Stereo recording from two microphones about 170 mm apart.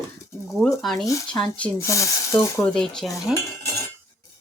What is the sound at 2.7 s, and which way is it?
Speech, 5° left (ahead or behind).